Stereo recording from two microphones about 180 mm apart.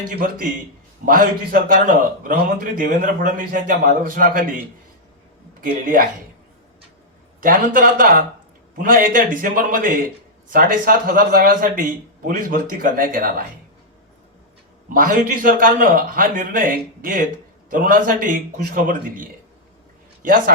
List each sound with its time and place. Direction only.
0.1 s speech: 50° right (ahead or behind)
5.5 s speech: 50° right (ahead or behind)
7.4 s speech: 50° right (ahead or behind)
14.8 s speech: 50° right (ahead or behind)